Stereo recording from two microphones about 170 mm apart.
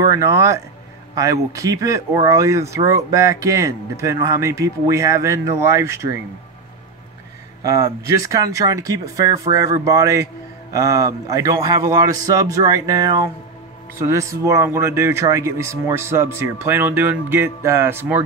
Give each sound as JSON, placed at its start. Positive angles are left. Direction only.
{"t": 0.1, "sound": "speech", "side_deg": -15}
{"t": 7.6, "sound": "speech", "side_deg": -20}